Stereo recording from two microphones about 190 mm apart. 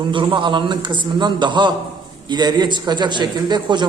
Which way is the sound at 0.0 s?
25° right (ahead or behind).